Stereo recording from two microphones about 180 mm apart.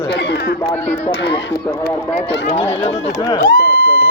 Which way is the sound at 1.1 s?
70° left (ahead or behind).